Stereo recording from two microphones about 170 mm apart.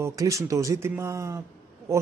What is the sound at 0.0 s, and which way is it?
A man's voice, 20° right (ahead or behind).